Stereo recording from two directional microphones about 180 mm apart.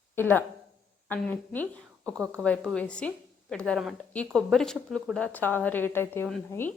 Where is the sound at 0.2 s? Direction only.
10° left (ahead or behind).